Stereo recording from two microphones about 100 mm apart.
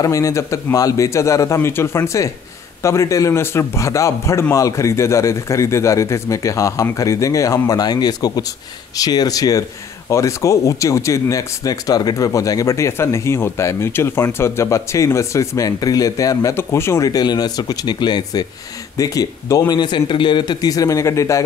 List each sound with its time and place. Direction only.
0.0 s speech: 35° left (ahead or behind)
19.7 s speech: 50° left (ahead or behind); by 21.4 s 30° left (ahead or behind)